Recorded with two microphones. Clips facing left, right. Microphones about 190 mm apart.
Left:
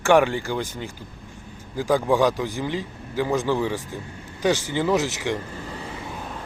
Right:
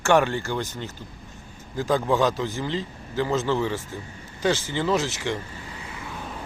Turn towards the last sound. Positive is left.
turn(degrees=15)  # may be behind; listen again after turning